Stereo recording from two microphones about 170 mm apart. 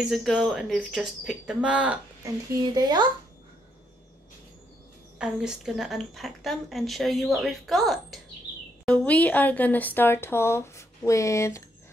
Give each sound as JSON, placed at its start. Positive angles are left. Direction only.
{"t": 0.1, "sound": "a woman's voice", "side_deg": 0}
{"t": 2.2, "sound": "speech", "side_deg": -25}
{"t": 5.2, "sound": "a woman's voice", "side_deg": -5}